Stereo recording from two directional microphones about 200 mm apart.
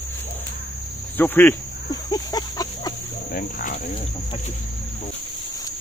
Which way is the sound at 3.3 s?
45° left (ahead or behind).